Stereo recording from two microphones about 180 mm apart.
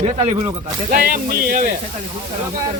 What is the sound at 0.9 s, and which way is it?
Speech, 55° right (ahead or behind).